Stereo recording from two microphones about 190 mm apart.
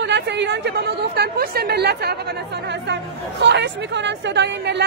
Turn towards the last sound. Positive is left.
turn(degrees=-65)  # may be behind; listen again after turning